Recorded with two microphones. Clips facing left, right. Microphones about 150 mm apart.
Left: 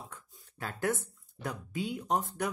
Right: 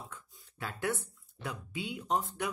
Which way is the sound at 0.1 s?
45° left (ahead or behind).